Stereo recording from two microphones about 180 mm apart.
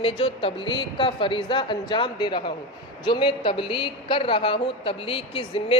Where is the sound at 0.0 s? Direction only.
30° left (ahead or behind).